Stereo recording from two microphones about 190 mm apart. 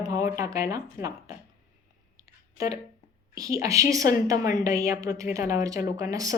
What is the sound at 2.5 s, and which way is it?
Speech, 15° right (ahead or behind).